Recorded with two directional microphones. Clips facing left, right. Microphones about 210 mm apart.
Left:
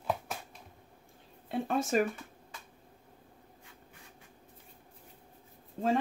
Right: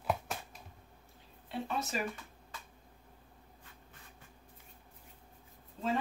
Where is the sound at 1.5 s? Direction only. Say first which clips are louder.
Left 7 dB; 50° left (ahead or behind).